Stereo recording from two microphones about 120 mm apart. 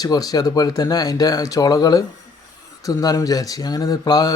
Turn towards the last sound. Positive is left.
turn(degrees=30)  # may be behind; listen again after turning